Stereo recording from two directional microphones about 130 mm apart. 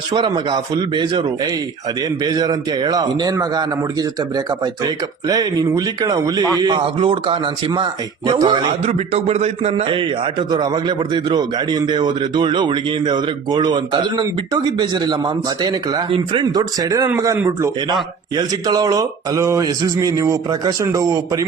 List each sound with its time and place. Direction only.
0.1 s a man's voice: 35° right (ahead or behind)
8.8 s a man's voice: 55° right (ahead or behind); by 21.4 s 25° right (ahead or behind)